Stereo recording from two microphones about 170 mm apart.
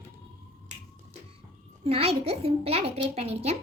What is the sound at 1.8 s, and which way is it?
A child's voice, 35° right (ahead or behind).